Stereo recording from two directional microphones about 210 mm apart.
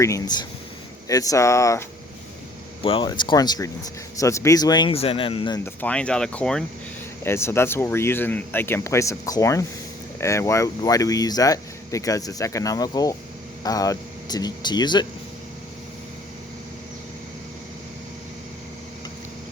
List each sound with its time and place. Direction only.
1.0 s speech: 15° left (ahead or behind)
2.8 s speech: 25° left (ahead or behind)
5.6 s speech: 5° left (ahead or behind)